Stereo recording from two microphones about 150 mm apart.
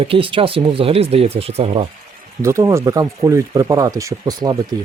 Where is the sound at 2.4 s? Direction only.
20° right (ahead or behind).